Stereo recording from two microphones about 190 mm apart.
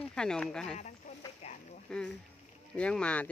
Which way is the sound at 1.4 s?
35° left (ahead or behind).